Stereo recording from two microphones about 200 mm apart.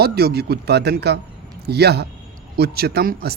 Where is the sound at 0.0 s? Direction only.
50° right (ahead or behind).